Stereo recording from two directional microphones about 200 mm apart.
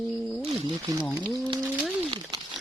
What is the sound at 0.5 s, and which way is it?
Speech, 20° right (ahead or behind).